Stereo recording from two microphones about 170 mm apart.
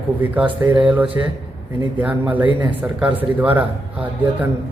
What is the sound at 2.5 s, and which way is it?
Speech, 30° right (ahead or behind).